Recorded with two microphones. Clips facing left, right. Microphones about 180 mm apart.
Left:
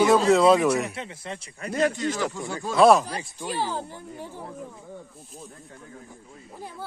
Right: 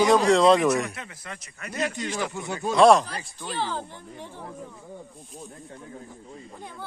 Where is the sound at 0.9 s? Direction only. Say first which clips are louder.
Left 4 dB; 30° left (ahead or behind).